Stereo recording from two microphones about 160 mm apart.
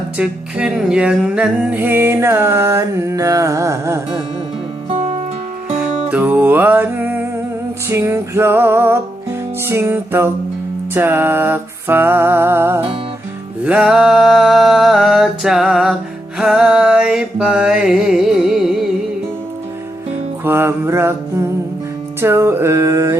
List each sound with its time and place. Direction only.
0.2 s music: 5° right (ahead or behind)
5.7 s music: 5° right (ahead or behind)
20.4 s music: 15° right (ahead or behind)